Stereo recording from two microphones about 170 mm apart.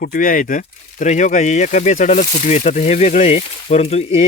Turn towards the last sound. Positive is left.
turn(degrees=40)  # may be behind; listen again after turning